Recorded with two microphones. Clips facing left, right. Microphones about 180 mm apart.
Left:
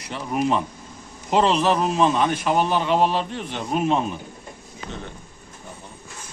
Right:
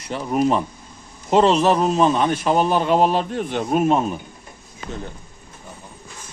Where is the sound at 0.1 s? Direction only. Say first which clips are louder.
Right 3 dB; 40° right (ahead or behind).